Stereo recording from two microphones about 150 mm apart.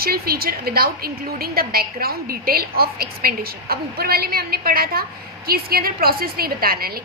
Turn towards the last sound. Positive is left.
turn(degrees=-90)